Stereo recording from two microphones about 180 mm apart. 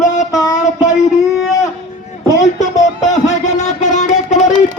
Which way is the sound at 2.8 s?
40° left (ahead or behind).